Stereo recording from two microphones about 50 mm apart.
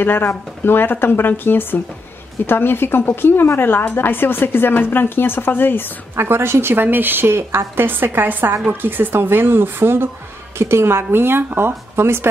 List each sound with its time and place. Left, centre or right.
0.0 s speech: left
6.1 s speech: right